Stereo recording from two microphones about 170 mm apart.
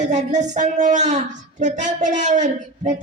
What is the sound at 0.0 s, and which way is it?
A woman's voice, 45° right (ahead or behind).